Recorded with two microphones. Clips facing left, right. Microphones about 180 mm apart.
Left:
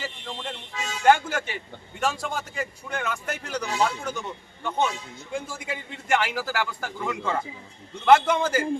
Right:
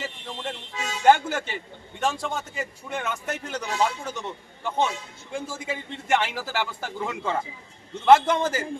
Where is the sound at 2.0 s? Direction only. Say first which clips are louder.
Right 1 dB; centre (ahead or behind).